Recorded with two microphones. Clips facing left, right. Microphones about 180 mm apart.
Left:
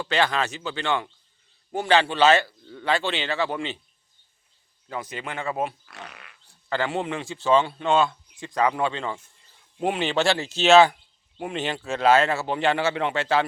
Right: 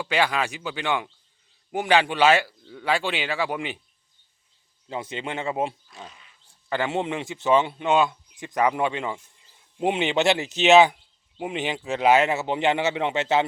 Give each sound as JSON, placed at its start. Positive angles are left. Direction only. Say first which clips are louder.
{"t": 0.0, "sound": "speech", "louder": "even", "side_deg": -10}
{"t": 4.9, "sound": "a man's voice", "louder": "right 2 dB", "side_deg": -25}
{"t": 5.8, "sound": "speech", "louder": "left 1 dB", "side_deg": 70}
{"t": 6.7, "sound": "a man's voice", "louder": "right 1 dB", "side_deg": -20}